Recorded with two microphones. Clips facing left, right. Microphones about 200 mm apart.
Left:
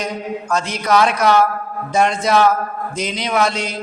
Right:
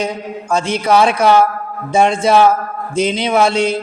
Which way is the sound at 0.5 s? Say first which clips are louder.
Right 4 dB; 30° right (ahead or behind).